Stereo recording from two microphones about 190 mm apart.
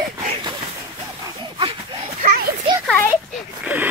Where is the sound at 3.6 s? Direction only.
10° right (ahead or behind).